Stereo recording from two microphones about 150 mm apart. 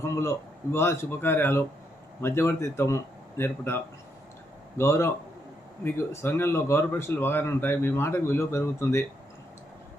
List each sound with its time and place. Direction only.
0.0 s speech: 20° left (ahead or behind)
4.8 s speech: 15° left (ahead or behind)